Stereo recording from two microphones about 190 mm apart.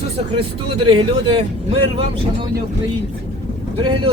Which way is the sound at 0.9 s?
30° right (ahead or behind).